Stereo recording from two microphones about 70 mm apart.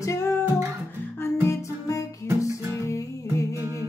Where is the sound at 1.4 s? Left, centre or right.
Left.